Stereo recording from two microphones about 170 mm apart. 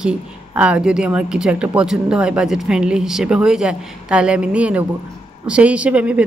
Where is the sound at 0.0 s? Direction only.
5° right (ahead or behind).